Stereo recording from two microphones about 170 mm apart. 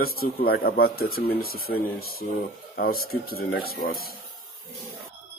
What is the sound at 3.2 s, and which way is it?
Speech, 65° left (ahead or behind).